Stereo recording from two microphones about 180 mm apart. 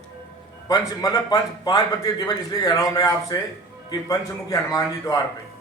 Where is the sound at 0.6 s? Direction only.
20° left (ahead or behind).